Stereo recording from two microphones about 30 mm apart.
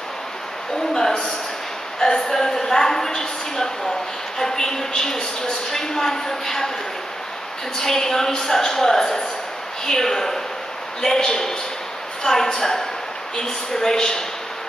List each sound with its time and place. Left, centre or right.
0.9 s a sound: centre
5.7 s a woman's voice: centre
7.8 s a woman's voice: centre